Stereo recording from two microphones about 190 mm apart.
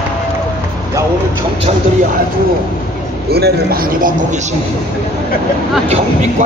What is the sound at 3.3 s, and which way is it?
Speech, 55° right (ahead or behind).